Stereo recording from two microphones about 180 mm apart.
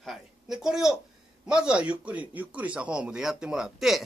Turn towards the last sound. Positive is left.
turn(degrees=0)  # may be behind; listen again after turning